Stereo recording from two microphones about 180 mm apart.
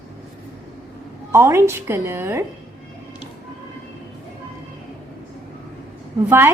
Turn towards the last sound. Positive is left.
turn(degrees=-10)  # may be behind; listen again after turning